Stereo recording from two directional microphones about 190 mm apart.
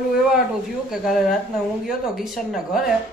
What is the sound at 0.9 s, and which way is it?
Speech, centre (ahead or behind).